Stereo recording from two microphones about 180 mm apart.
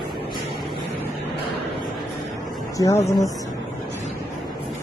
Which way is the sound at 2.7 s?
20° left (ahead or behind).